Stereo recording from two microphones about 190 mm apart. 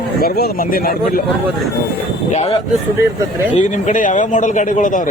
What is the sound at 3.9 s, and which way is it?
Speech, 40° left (ahead or behind).